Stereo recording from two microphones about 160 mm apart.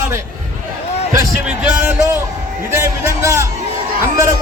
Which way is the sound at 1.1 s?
15° right (ahead or behind).